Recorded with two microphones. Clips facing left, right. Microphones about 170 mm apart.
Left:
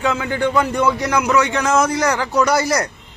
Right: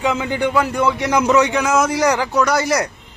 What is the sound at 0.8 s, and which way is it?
Speech, 20° right (ahead or behind).